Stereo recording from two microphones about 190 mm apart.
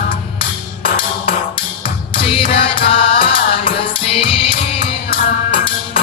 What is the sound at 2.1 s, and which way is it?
Music, 30° left (ahead or behind).